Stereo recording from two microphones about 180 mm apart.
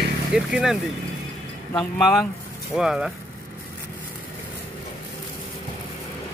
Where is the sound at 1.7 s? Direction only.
5° left (ahead or behind).